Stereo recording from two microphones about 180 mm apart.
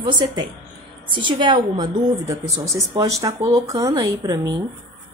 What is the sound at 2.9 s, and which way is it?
A woman's voice, 20° right (ahead or behind).